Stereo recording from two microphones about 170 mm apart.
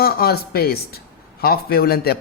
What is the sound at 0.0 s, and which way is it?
A woman's voice, 65° left (ahead or behind).